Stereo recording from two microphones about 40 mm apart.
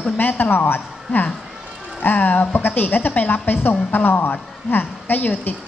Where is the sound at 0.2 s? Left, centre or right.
Left.